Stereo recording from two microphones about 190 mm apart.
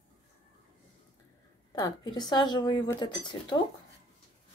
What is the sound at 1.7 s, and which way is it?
Speech, 20° left (ahead or behind).